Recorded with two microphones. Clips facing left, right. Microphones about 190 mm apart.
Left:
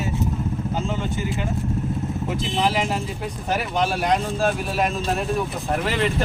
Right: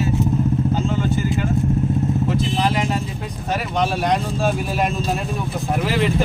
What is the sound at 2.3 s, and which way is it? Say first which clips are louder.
Vehicle: right 2 dB; 5° left (ahead or behind).